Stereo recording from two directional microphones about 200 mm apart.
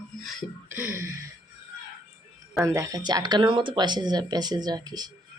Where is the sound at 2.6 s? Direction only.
15° right (ahead or behind).